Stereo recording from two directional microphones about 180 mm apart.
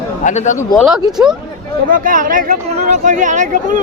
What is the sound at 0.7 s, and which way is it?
Speech, centre (ahead or behind).